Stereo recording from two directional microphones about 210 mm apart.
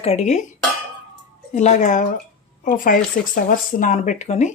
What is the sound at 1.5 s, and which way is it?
Speech, 35° left (ahead or behind).